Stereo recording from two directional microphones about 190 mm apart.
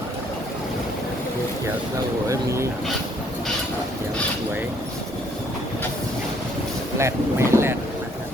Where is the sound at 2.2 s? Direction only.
15° right (ahead or behind).